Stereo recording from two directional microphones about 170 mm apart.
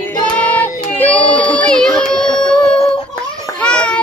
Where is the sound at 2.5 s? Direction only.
5° left (ahead or behind).